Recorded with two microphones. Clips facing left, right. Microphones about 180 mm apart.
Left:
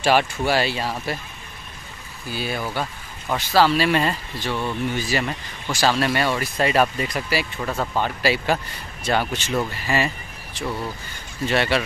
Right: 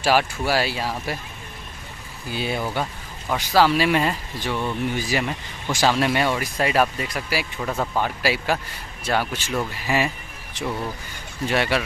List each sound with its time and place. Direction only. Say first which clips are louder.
0.0 s speech: left 1 dB; 5° right (ahead or behind)
2.3 s speech: right 1 dB; 20° right (ahead or behind)
11.4 s speech: left 1 dB; 10° right (ahead or behind)